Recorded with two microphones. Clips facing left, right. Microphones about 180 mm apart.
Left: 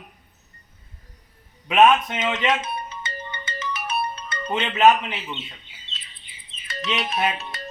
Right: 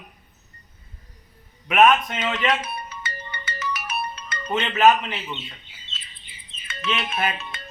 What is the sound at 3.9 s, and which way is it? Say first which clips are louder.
Music: left 3 dB; 30° left (ahead or behind).